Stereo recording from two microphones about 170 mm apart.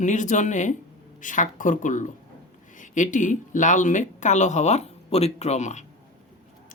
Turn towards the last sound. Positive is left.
turn(degrees=45)  # may be behind; listen again after turning